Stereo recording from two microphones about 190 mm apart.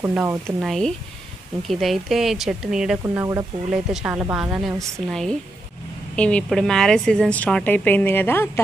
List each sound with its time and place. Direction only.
0.0 s speech: 10° right (ahead or behind)
0.7 s a woman's voice: centre (ahead or behind)
3.0 s speech: 15° right (ahead or behind)
3.7 s a woman's voice: 5° right (ahead or behind); by 8.5 s 10° left (ahead or behind)